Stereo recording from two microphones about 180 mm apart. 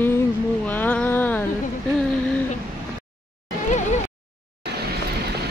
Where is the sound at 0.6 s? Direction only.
10° left (ahead or behind).